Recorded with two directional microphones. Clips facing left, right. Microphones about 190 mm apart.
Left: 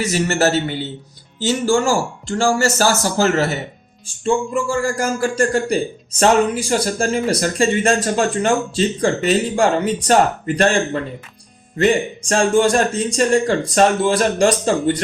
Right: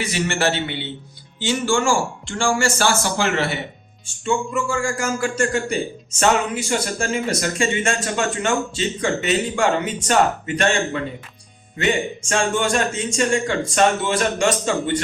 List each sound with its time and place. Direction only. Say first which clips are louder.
0.0 s speech: left 4 dB; 40° left (ahead or behind)
12.3 s speech: left 6 dB; 35° left (ahead or behind)